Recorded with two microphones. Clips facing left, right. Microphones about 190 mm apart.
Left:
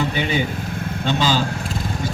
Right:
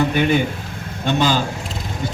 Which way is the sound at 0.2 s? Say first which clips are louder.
Right 4 dB; 55° right (ahead or behind).